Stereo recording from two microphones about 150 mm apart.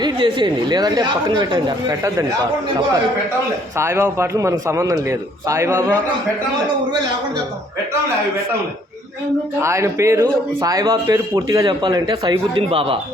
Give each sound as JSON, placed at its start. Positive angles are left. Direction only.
{"t": 0.0, "sound": "a man's voice", "side_deg": -30}
{"t": 3.8, "sound": "a man's voice", "side_deg": -15}
{"t": 9.6, "sound": "a man's voice", "side_deg": -20}